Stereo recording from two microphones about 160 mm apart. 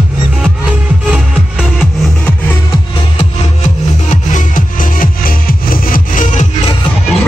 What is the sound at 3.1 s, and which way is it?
Music, 45° left (ahead or behind).